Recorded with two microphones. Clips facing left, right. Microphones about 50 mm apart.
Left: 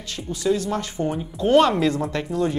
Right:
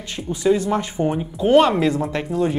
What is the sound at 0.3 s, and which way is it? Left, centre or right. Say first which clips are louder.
Speech: right 4 dB; right.